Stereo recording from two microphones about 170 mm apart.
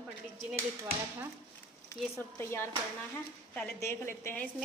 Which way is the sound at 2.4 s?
15° left (ahead or behind).